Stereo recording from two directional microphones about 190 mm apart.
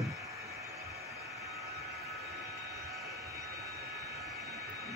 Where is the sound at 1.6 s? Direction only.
15° right (ahead or behind).